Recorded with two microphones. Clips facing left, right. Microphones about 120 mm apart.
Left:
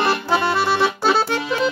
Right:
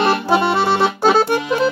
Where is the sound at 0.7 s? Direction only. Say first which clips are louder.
Right 4 dB; 50° right (ahead or behind).